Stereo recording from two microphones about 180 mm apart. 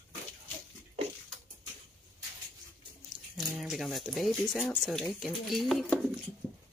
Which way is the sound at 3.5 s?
Centre (ahead or behind).